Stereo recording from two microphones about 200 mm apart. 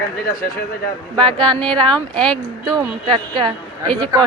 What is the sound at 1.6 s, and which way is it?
Speech, 5° left (ahead or behind).